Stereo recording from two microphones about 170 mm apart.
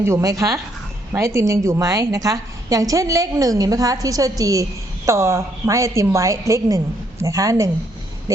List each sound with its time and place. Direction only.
0.0 s a woman's voice: 15° right (ahead or behind)